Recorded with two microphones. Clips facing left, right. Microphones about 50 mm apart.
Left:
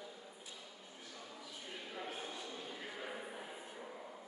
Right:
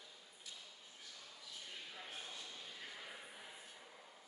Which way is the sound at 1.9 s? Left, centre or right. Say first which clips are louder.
Left 9 dB; left.